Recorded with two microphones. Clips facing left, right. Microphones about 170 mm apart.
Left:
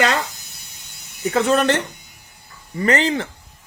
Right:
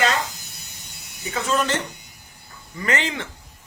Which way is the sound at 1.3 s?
65° left (ahead or behind).